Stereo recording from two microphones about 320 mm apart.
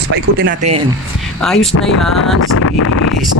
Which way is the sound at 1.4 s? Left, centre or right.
Centre.